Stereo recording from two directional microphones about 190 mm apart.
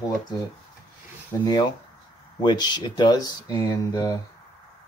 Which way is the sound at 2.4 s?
25° left (ahead or behind).